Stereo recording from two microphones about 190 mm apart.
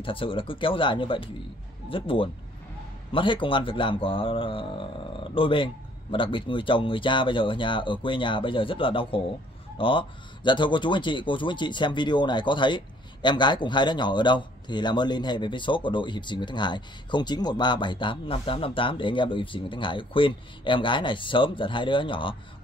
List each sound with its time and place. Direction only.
0.0 s a man's voice: 25° left (ahead or behind)